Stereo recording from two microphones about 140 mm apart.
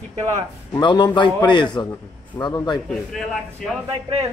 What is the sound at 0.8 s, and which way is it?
A man's voice, 35° left (ahead or behind).